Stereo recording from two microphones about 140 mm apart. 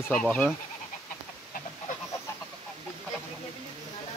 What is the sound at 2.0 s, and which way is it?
Fowl, 20° left (ahead or behind).